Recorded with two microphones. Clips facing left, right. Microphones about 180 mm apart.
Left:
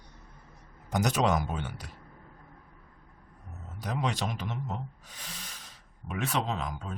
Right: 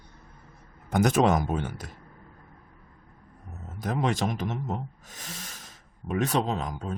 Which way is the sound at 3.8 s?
50° right (ahead or behind).